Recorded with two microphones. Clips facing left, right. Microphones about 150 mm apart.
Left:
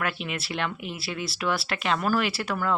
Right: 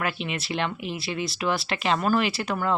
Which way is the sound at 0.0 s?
Centre (ahead or behind).